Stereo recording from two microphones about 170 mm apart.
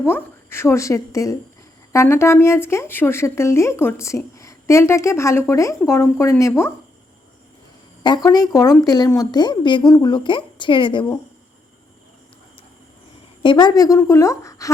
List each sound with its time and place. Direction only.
0.0 s speech: 15° left (ahead or behind)
8.0 s a woman's voice: 25° left (ahead or behind)
13.4 s a woman's voice: 25° left (ahead or behind)